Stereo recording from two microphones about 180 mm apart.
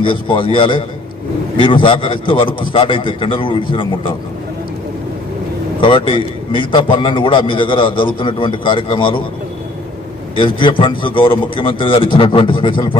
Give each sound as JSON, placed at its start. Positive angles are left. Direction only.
{"t": 0.0, "sound": "a man's voice", "side_deg": 30}
{"t": 5.8, "sound": "a man's voice", "side_deg": 30}
{"t": 10.3, "sound": "a man's voice", "side_deg": 25}